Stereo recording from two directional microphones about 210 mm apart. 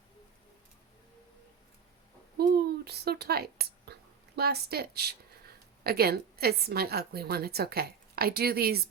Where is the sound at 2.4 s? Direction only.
50° right (ahead or behind).